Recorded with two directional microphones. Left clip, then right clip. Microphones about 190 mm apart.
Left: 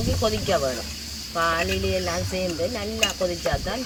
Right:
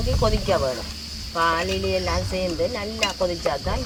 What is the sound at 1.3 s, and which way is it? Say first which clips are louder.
Speech: right 1 dB; 25° right (ahead or behind).